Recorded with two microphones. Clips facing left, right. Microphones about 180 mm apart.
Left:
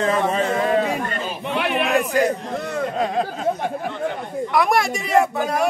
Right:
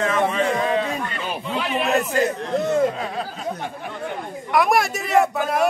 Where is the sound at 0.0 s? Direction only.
35° left (ahead or behind).